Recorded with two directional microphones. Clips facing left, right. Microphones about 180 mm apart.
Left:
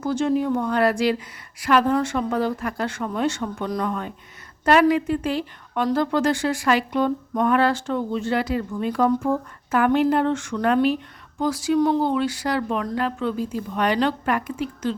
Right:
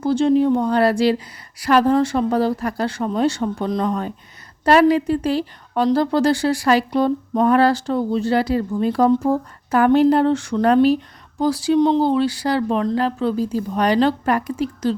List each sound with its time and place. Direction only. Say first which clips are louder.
0.0 s a woman's voice: right 6 dB; 30° right (ahead or behind)